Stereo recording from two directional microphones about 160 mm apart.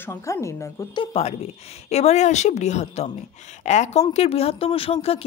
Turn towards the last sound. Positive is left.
turn(degrees=40)  # may be behind; listen again after turning